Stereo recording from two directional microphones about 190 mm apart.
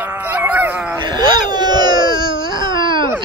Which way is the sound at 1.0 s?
20° right (ahead or behind).